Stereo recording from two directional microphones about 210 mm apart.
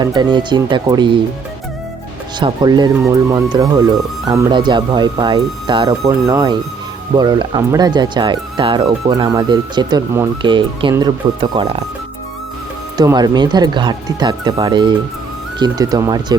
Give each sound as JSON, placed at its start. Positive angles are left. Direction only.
{"t": 0.0, "sound": "speech", "side_deg": -20}
{"t": 2.4, "sound": "speech", "side_deg": -20}
{"t": 13.0, "sound": "speech", "side_deg": -20}